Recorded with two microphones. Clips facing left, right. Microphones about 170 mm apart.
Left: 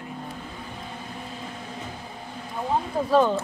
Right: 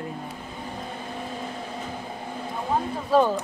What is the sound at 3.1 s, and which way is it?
Speech, 15° right (ahead or behind).